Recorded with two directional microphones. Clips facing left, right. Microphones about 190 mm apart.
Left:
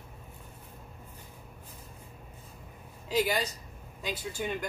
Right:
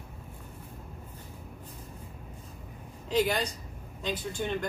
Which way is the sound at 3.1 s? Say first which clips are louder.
Right 1 dB; 5° left (ahead or behind).